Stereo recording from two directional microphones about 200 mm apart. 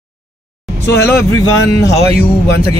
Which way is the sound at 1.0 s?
15° left (ahead or behind).